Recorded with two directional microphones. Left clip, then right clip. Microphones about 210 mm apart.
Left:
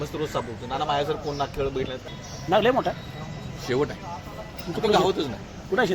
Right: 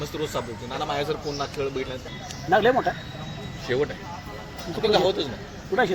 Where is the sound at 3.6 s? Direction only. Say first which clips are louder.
Even; 50° left (ahead or behind).